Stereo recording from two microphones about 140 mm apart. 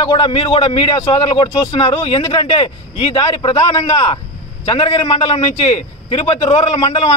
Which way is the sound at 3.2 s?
30° left (ahead or behind).